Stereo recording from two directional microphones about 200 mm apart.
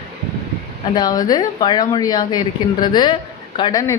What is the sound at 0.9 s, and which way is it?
A woman's voice, 20° left (ahead or behind).